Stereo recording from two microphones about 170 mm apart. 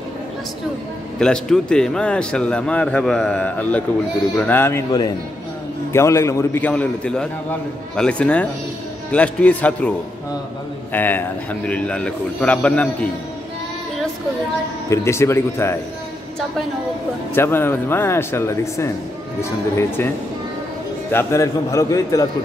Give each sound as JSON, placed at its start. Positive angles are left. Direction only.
{"t": 1.2, "sound": "a man's voice", "side_deg": 5}
{"t": 14.9, "sound": "a man's voice", "side_deg": 15}
{"t": 17.3, "sound": "a man's voice", "side_deg": 15}
{"t": 21.1, "sound": "a man's voice", "side_deg": 15}